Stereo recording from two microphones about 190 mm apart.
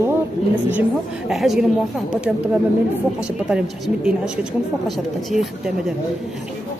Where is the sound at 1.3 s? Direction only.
Centre (ahead or behind).